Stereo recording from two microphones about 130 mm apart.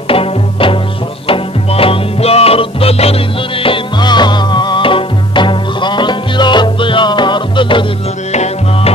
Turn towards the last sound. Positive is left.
turn(degrees=40)  # may be behind; listen again after turning